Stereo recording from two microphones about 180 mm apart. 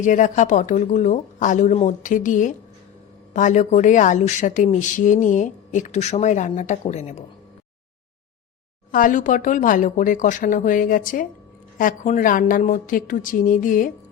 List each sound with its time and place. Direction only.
0.0 s speech: 45° left (ahead or behind)
8.9 s speech: 50° left (ahead or behind)